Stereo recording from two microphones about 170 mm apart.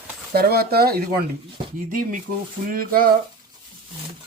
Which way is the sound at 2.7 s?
60° right (ahead or behind).